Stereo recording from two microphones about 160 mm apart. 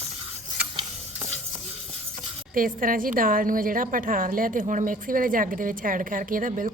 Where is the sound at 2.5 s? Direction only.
60° right (ahead or behind).